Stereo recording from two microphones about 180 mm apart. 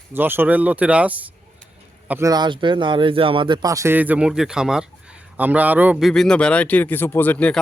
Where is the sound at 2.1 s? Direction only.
20° right (ahead or behind).